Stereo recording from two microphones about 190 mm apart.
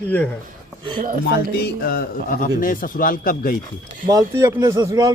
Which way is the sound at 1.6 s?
55° left (ahead or behind).